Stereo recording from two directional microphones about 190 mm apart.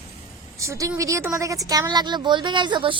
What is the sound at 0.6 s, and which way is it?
A woman's voice, 15° right (ahead or behind).